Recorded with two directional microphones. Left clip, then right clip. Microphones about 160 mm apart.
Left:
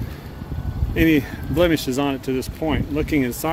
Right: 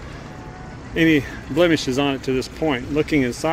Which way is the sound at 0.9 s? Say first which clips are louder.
Right 1 dB; 10° left (ahead or behind).